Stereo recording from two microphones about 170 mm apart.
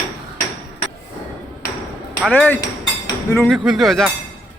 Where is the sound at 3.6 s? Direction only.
Centre (ahead or behind).